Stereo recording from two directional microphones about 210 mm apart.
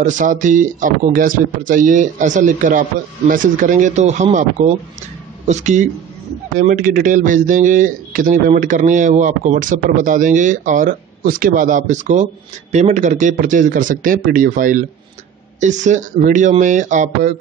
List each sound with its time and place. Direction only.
0.0 s a man's voice: 35° right (ahead or behind)